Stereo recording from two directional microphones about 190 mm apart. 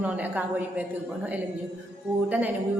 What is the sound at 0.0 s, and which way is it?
A woman's voice, 10° right (ahead or behind).